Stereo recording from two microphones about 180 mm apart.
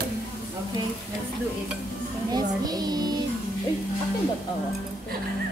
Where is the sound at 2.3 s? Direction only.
20° right (ahead or behind).